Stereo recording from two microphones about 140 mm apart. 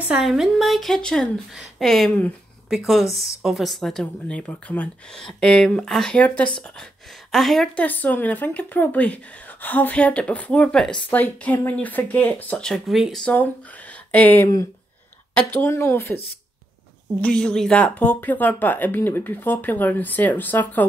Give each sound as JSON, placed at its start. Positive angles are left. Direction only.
{"t": 0.0, "sound": "a woman's voice", "side_deg": -5}
{"t": 17.2, "sound": "speech", "side_deg": 5}